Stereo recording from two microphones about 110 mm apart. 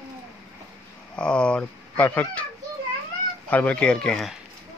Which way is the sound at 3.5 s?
10° left (ahead or behind).